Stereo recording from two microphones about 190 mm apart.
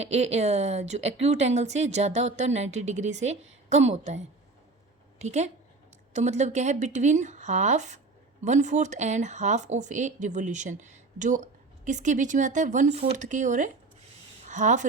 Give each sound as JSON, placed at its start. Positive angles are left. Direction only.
{"t": 0.0, "sound": "speech", "side_deg": -35}
{"t": 5.2, "sound": "speech", "side_deg": -35}